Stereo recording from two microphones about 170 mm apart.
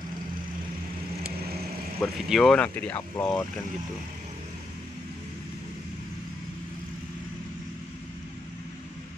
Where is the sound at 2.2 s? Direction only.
Centre (ahead or behind).